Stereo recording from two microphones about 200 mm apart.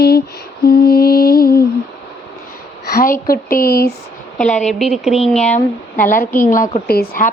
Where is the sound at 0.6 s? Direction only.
50° left (ahead or behind).